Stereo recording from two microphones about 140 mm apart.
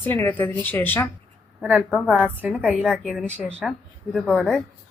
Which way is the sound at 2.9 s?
Centre (ahead or behind).